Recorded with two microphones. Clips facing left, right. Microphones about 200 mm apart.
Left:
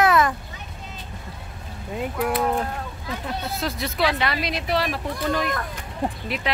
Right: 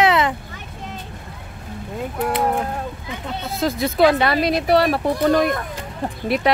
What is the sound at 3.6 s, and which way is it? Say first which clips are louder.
Speech: right 10 dB; 45° right (ahead or behind).